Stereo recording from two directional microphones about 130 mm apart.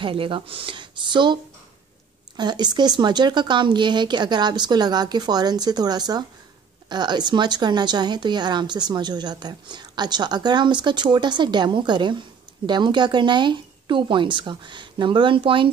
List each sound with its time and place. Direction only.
0.0 s a woman's voice: 40° right (ahead or behind)